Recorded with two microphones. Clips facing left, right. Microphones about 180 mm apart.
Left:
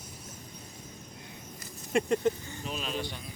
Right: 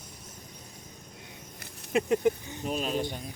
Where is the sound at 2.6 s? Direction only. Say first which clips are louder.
Right 6 dB; 45° right (ahead or behind).